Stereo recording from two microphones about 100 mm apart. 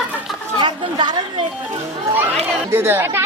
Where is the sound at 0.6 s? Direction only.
50° right (ahead or behind).